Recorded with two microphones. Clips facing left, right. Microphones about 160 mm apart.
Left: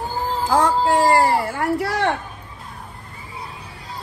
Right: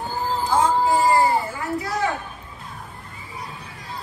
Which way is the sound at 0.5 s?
85° left.